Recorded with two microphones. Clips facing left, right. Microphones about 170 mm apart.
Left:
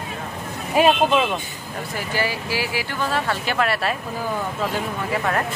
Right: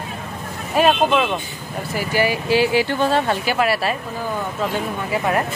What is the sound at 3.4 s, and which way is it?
Speech, 5° right (ahead or behind).